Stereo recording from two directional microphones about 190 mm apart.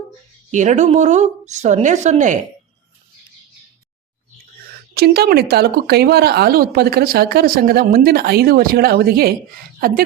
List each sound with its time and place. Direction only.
0.5 s speech: 40° right (ahead or behind)
4.9 s speech: 55° right (ahead or behind)